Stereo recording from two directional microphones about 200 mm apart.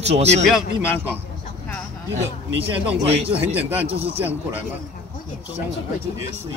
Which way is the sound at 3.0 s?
30° right (ahead or behind).